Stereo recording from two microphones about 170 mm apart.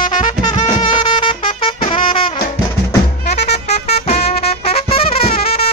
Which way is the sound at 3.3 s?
40° left (ahead or behind).